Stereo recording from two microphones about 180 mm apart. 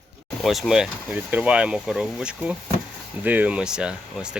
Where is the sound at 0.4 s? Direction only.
Centre (ahead or behind).